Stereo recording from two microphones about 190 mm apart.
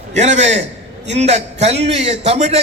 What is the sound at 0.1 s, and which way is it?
A man's voice, 35° right (ahead or behind).